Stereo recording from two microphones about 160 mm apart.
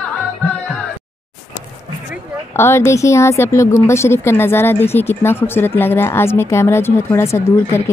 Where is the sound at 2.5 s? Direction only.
15° left (ahead or behind).